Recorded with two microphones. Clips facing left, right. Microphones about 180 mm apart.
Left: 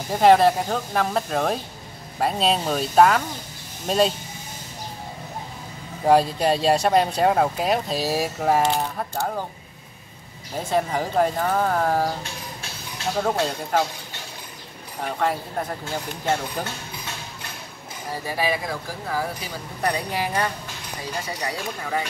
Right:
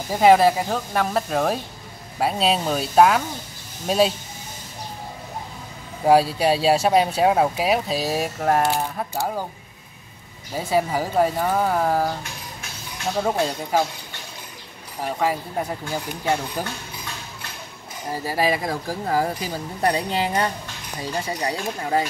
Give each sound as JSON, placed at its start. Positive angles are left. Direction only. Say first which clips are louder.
{"t": 0.1, "sound": "speech", "louder": "right 1 dB", "side_deg": -5}
{"t": 6.0, "sound": "speech", "louder": "right 1 dB", "side_deg": -5}
{"t": 10.5, "sound": "speech", "louder": "right 2 dB", "side_deg": -5}
{"t": 13.2, "sound": "speech", "louder": "right 1 dB", "side_deg": -5}
{"t": 15.0, "sound": "speech", "louder": "right 1 dB", "side_deg": -5}
{"t": 18.2, "sound": "speech", "louder": "right 3 dB", "side_deg": -40}
{"t": 19.8, "sound": "speech", "louder": "right 3 dB", "side_deg": -30}